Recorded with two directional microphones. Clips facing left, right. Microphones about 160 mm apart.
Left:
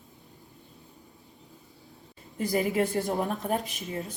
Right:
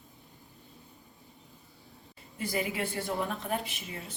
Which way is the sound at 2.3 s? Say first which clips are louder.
Left 7 dB; 45° left (ahead or behind).